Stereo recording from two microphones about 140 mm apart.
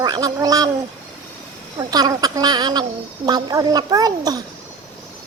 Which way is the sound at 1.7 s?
25° right (ahead or behind).